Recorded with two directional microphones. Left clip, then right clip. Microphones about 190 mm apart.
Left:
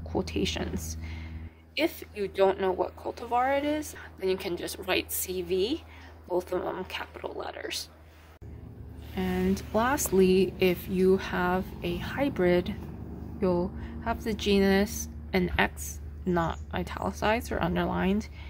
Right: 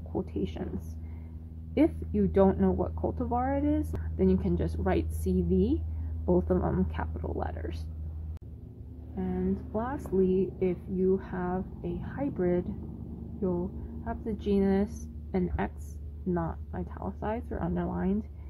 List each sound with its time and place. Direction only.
0.2 s a woman's voice: 10° left (ahead or behind)
1.8 s a woman's voice: 10° left (ahead or behind)
9.1 s a woman's voice: 25° left (ahead or behind)
13.4 s a sound: 25° left (ahead or behind)
14.2 s a woman's voice: 10° left (ahead or behind)